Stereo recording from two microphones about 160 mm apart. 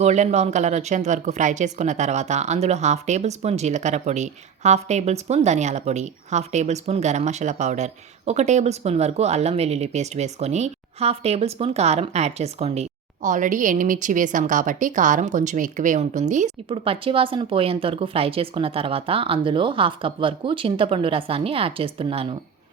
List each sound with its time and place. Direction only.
0.0 s speech: 45° right (ahead or behind)
16.6 s speech: 35° right (ahead or behind)